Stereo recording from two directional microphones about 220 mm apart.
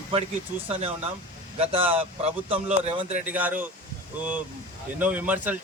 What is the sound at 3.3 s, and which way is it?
Speech, 5° right (ahead or behind).